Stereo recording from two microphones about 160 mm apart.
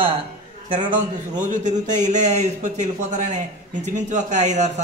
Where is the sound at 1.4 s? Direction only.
50° right (ahead or behind).